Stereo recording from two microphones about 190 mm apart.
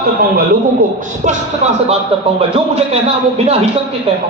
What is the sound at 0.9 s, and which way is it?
Speech, 35° right (ahead or behind).